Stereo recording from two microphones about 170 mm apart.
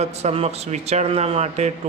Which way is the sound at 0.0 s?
40° right (ahead or behind).